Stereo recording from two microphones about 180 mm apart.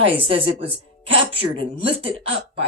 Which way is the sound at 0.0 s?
30° right (ahead or behind).